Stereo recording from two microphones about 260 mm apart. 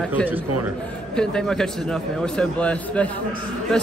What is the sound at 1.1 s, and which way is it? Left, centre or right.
Speech, centre.